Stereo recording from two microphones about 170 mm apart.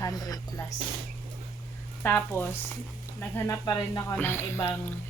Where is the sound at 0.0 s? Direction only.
20° left (ahead or behind).